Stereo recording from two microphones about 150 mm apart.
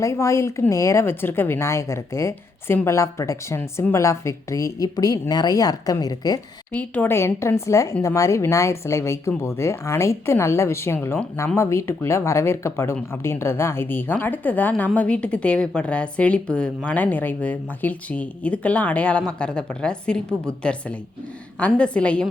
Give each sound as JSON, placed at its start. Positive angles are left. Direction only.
{"t": 0.0, "sound": "a woman's voice", "side_deg": 20}
{"t": 6.7, "sound": "a woman's voice", "side_deg": 10}